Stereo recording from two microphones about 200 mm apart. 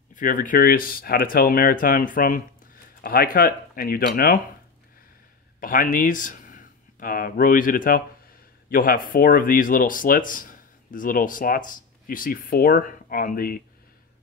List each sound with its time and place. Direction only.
0.1 s speech: 40° left (ahead or behind)
5.6 s speech: 45° left (ahead or behind)